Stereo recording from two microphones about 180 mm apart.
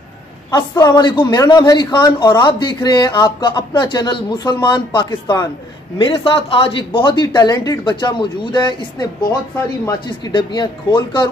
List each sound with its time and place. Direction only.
0.5 s a man's voice: 20° left (ahead or behind)